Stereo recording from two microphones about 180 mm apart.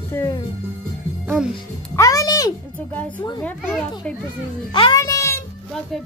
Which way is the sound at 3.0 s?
10° left (ahead or behind).